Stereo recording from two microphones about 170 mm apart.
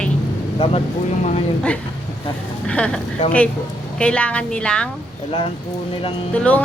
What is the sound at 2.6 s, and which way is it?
A woman's voice, 5° left (ahead or behind).